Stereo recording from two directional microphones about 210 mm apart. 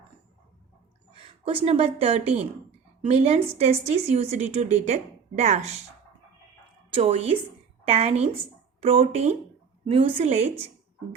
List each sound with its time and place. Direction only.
1.1 s a woman's voice: 25° right (ahead or behind)
6.9 s a woman's voice: 30° right (ahead or behind)